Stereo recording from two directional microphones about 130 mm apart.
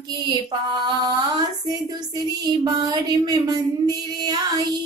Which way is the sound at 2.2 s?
30° right (ahead or behind).